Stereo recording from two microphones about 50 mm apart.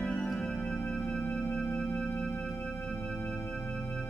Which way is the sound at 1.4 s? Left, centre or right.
Left.